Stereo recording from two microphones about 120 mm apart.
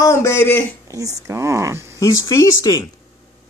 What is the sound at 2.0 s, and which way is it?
Speech, 25° left (ahead or behind).